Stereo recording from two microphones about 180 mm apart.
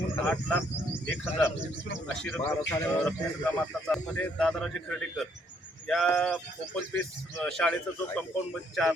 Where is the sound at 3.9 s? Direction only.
5° left (ahead or behind).